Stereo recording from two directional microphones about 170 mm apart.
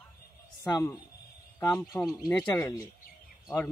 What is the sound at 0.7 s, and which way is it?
A man's voice, 20° left (ahead or behind).